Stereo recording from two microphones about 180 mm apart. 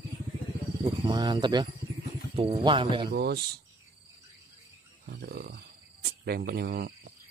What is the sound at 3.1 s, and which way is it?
Speech, 65° right (ahead or behind).